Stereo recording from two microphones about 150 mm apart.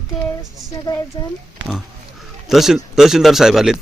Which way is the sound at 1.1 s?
30° left (ahead or behind).